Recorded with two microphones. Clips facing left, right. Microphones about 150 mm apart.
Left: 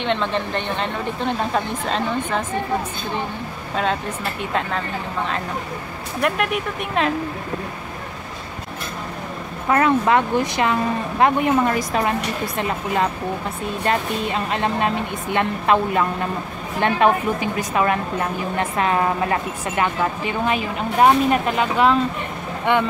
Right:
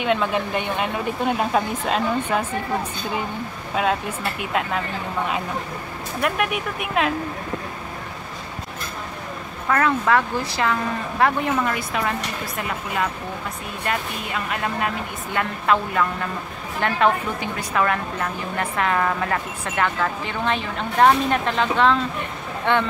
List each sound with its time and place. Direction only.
0.0 s speech: 10° right (ahead or behind)
3.7 s speech: 5° right (ahead or behind)
6.2 s speech: centre (ahead or behind)
9.7 s speech: 20° left (ahead or behind)
11.6 s a woman's voice: 35° left (ahead or behind); by 22.8 s 15° left (ahead or behind)